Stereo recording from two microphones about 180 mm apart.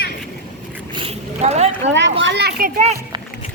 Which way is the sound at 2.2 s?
70° right (ahead or behind).